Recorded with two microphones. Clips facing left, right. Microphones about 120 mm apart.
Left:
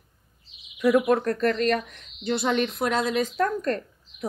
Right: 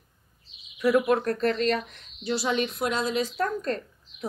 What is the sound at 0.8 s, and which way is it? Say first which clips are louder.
Speech: left 2 dB; 15° left (ahead or behind).